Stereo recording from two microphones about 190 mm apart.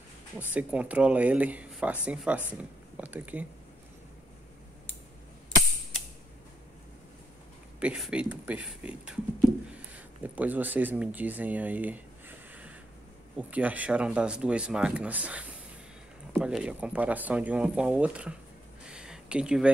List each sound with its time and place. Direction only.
0.4 s speech: 10° right (ahead or behind)
7.8 s speech: 5° right (ahead or behind)
18.9 s a sound: 5° right (ahead or behind)